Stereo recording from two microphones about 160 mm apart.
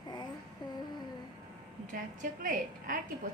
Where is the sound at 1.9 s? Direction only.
60° right (ahead or behind).